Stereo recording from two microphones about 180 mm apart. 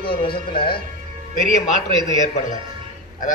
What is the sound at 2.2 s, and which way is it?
Speech, 45° left (ahead or behind).